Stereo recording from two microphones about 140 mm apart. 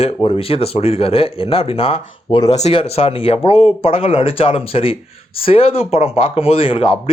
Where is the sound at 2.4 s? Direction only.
50° left (ahead or behind).